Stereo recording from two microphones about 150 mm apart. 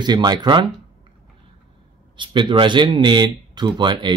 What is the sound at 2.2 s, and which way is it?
Speech, 30° right (ahead or behind).